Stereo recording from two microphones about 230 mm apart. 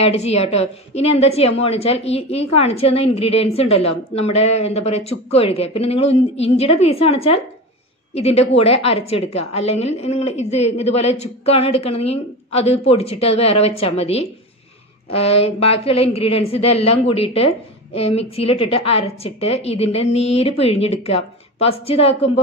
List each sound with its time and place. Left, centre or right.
0.0 s a woman's voice: left